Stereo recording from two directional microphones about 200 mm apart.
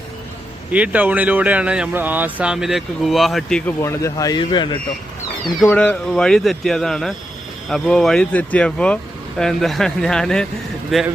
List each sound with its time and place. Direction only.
0.7 s speech: 5° right (ahead or behind)
3.8 s speech: 15° left (ahead or behind)
5.6 s speech: 5° left (ahead or behind)